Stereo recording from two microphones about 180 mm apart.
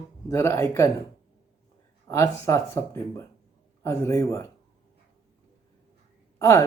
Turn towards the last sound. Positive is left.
turn(degrees=15)  # may be behind; listen again after turning